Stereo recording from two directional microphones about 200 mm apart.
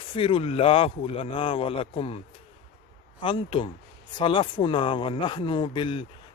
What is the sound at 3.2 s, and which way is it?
Speech, 25° left (ahead or behind).